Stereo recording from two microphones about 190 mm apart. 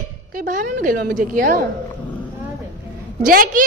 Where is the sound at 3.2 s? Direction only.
50° right (ahead or behind).